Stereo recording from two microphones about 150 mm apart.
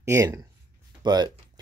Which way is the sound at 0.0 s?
20° right (ahead or behind).